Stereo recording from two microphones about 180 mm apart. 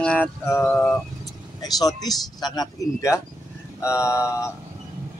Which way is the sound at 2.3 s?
20° left (ahead or behind).